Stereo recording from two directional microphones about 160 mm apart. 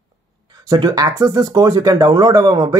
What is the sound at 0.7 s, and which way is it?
Speech, 25° right (ahead or behind).